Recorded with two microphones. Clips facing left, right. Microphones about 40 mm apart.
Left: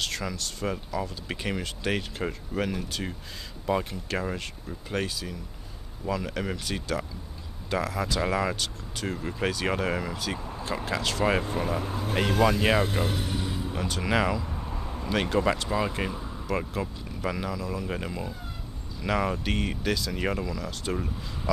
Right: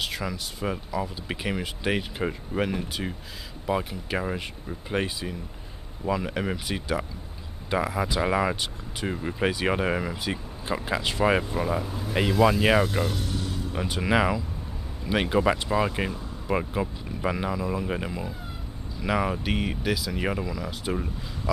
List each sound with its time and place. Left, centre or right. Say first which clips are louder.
0.0 s speech: right 1 dB; centre
11.5 s speech: right 2 dB; centre
11.8 s speech: left 2 dB; left
12.4 s speech: right 3 dB; centre
13.0 s a sound: even; centre
13.7 s speech: right 3 dB; centre